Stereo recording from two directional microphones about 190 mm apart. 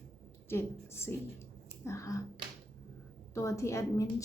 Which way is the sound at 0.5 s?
15° left (ahead or behind).